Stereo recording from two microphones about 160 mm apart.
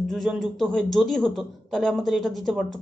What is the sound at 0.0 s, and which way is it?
A man's voice, centre (ahead or behind).